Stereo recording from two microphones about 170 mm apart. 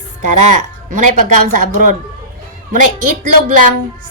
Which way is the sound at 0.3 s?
45° right (ahead or behind).